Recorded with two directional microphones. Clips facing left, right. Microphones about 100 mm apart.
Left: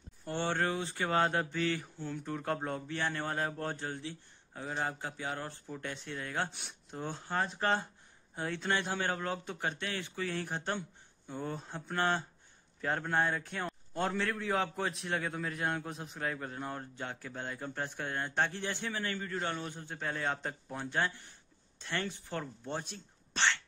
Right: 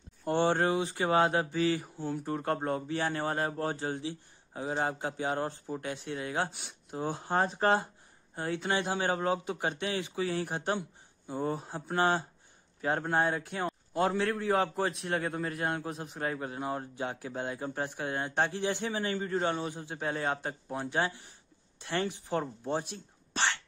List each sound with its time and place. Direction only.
0.4 s a man's voice: 20° right (ahead or behind)
5.8 s speech: 10° right (ahead or behind)
7.2 s speech: 35° right (ahead or behind)
8.4 s a man's voice: 5° right (ahead or behind)
18.6 s speech: 20° right (ahead or behind)
19.6 s speech: 10° right (ahead or behind)